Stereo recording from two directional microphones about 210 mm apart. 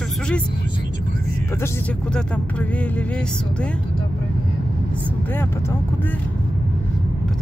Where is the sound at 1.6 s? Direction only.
5° left (ahead or behind).